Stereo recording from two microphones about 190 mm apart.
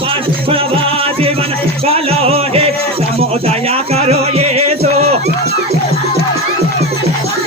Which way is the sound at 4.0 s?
35° right (ahead or behind).